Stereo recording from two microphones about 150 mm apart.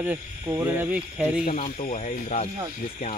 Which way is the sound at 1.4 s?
60° left (ahead or behind).